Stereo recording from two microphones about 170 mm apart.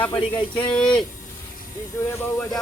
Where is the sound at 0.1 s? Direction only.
30° left (ahead or behind).